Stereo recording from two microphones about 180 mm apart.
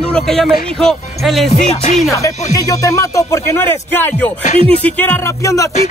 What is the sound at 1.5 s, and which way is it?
Music, 40° left (ahead or behind).